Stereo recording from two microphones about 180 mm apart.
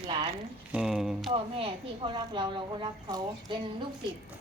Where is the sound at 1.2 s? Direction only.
30° right (ahead or behind).